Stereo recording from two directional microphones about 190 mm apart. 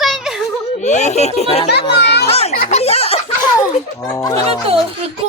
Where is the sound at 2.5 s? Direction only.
45° left (ahead or behind).